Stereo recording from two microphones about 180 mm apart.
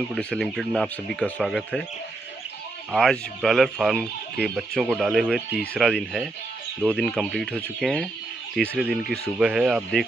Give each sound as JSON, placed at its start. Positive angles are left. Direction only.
{"t": 0.1, "sound": "speech", "side_deg": 5}
{"t": 2.9, "sound": "speech", "side_deg": 0}